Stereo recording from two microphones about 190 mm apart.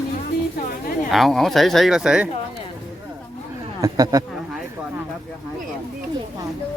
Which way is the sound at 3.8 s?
20° right (ahead or behind).